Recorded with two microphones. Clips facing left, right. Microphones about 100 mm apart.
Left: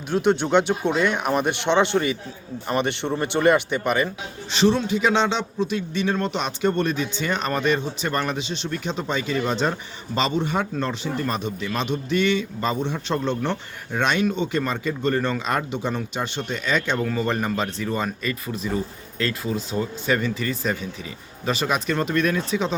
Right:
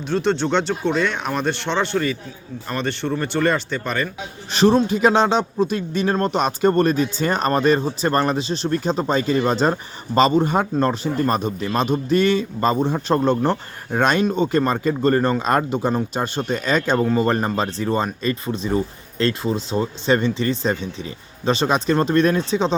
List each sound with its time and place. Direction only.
0.1 s speech: 10° left (ahead or behind)
4.5 s a man's voice: 45° right (ahead or behind)